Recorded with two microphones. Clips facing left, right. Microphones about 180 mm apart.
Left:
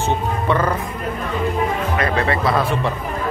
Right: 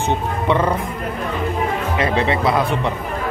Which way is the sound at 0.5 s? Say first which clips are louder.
Right 2 dB; 20° right (ahead or behind).